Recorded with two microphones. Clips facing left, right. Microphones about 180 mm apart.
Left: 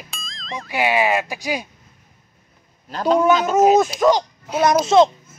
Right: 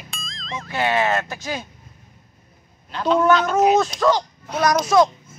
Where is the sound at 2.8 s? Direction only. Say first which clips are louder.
Left 2 dB; 40° left (ahead or behind).